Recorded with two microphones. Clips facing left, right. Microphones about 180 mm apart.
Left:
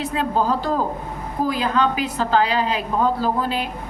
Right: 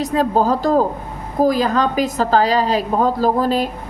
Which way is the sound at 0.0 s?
40° right (ahead or behind).